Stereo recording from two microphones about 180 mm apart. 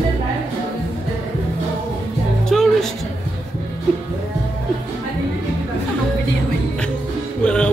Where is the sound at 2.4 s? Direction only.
Centre (ahead or behind).